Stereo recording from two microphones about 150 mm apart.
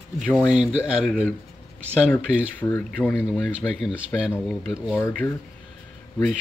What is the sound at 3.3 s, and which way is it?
Speech, centre (ahead or behind).